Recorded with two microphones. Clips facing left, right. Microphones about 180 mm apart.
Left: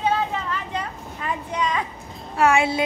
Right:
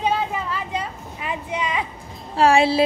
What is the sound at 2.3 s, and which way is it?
Speech, 30° right (ahead or behind).